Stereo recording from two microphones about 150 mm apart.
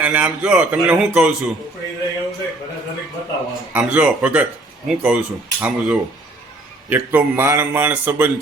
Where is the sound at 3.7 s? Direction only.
10° right (ahead or behind).